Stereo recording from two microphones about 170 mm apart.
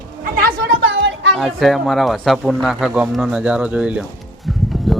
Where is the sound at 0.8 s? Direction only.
90° right.